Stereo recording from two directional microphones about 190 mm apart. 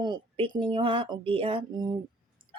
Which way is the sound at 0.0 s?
25° right (ahead or behind).